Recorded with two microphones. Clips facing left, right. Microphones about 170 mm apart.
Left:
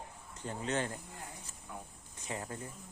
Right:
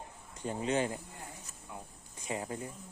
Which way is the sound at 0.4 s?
15° right (ahead or behind).